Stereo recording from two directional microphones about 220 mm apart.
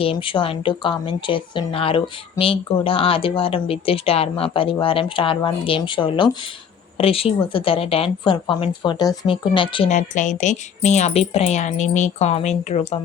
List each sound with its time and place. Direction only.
0.0 s speech: 25° left (ahead or behind)